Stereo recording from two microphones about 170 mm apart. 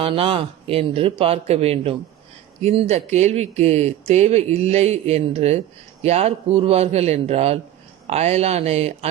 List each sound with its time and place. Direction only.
0.0 s speech: 30° right (ahead or behind)